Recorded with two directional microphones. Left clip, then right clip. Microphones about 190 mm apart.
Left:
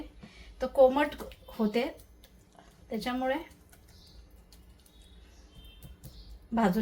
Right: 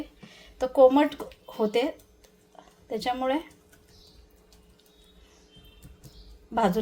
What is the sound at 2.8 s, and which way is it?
Speech, 45° right (ahead or behind).